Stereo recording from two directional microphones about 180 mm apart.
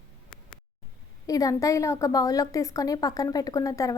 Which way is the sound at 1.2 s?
20° left (ahead or behind).